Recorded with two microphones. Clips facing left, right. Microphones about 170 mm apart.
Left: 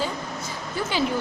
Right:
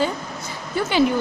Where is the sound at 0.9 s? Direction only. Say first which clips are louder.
Right 7 dB; 65° right (ahead or behind).